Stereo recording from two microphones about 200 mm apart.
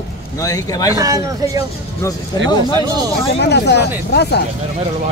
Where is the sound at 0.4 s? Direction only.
15° left (ahead or behind).